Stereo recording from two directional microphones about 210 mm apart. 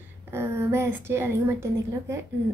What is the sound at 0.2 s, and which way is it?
A woman's voice, 10° right (ahead or behind).